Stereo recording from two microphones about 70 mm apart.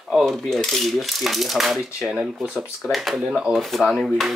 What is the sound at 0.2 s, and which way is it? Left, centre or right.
Speech, centre.